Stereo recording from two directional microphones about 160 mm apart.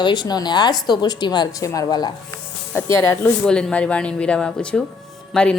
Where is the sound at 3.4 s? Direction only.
5° left (ahead or behind).